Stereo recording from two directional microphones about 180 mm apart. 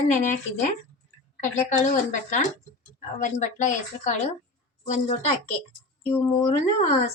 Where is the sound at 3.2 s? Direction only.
45° left (ahead or behind).